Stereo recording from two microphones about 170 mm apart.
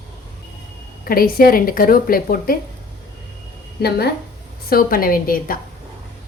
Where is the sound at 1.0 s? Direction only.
60° left (ahead or behind).